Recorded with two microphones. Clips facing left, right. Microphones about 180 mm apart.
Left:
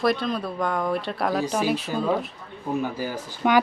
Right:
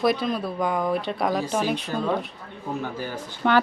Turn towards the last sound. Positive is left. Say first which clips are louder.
# left 1 dB
turn(degrees=10)  # may be behind; listen again after turning